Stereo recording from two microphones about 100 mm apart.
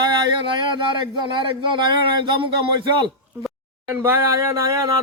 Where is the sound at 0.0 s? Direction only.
50° right (ahead or behind).